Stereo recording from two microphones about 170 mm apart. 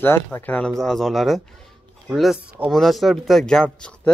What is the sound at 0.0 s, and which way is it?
Speech, 10° left (ahead or behind).